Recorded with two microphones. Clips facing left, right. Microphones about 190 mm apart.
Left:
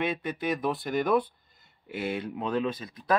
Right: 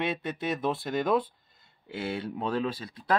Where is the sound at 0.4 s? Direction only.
25° right (ahead or behind).